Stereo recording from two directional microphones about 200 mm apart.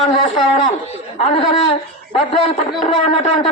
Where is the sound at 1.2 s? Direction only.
35° left (ahead or behind).